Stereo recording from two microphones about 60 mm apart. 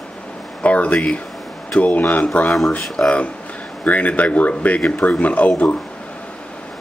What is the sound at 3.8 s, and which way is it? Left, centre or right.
Speech, left.